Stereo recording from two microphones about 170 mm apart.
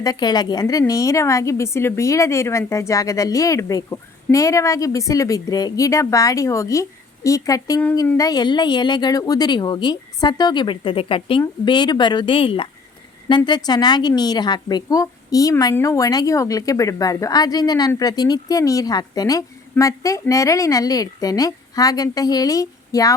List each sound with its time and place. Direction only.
0.0 s a woman's voice: 25° left (ahead or behind)